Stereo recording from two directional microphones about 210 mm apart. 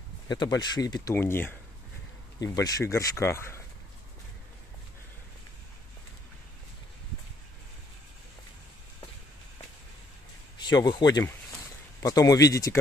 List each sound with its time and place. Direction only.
0.3 s speech: 20° left (ahead or behind)
10.6 s speech: 20° left (ahead or behind)